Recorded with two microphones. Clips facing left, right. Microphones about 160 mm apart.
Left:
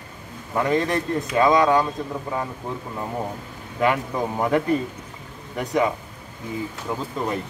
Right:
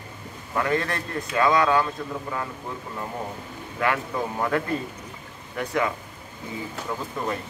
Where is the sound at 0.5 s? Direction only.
15° left (ahead or behind).